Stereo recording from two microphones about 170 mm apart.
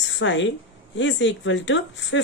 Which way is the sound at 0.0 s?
90° left.